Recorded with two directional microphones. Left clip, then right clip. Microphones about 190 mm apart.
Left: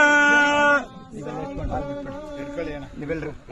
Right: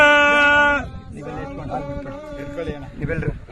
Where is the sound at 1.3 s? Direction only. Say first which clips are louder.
Right 1 dB; 25° right (ahead or behind).